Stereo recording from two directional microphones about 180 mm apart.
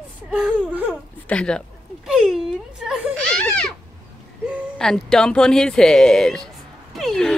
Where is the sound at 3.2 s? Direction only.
5° left (ahead or behind).